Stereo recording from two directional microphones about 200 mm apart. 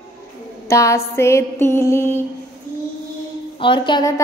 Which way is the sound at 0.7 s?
15° left (ahead or behind).